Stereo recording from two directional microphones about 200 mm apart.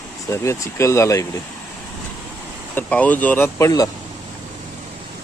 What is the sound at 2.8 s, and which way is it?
Speech, 5° left (ahead or behind).